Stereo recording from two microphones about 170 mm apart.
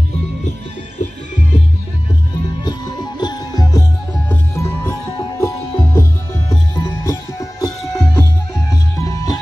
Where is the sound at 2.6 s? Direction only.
25° left (ahead or behind).